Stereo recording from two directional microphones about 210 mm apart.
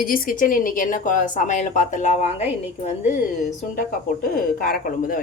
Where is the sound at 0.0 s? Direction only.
45° left (ahead or behind).